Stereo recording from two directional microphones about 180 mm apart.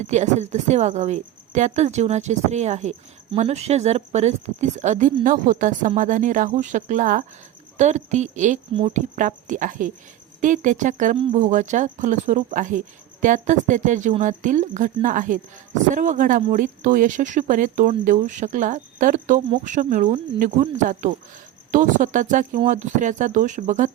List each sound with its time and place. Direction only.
0.0 s speech: 40° right (ahead or behind)
9.1 s speech: 45° right (ahead or behind)